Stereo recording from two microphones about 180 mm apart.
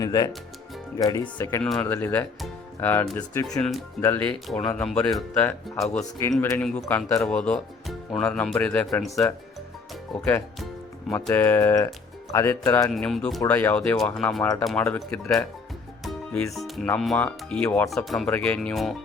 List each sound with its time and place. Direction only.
0.0 s speech: 20° left (ahead or behind)
1.6 s speech: 5° left (ahead or behind)
10.2 s speech: 15° left (ahead or behind)
12.9 s speech: centre (ahead or behind)
16.0 s music: centre (ahead or behind)
17.0 s speech: 5° left (ahead or behind)
17.9 s speech: centre (ahead or behind)